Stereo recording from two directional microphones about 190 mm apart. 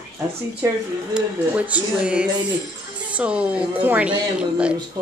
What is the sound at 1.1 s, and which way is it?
A woman's voice, 5° right (ahead or behind).